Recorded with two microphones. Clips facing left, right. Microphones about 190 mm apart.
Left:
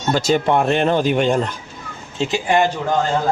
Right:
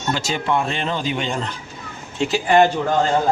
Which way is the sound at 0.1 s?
45° left (ahead or behind).